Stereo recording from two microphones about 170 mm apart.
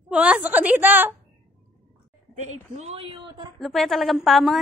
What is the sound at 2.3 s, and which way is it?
A woman's voice, 45° right (ahead or behind).